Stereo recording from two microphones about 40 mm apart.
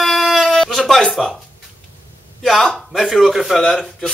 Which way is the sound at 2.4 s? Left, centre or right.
Centre.